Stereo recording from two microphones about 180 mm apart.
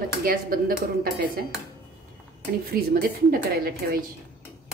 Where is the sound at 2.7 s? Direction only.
55° right (ahead or behind).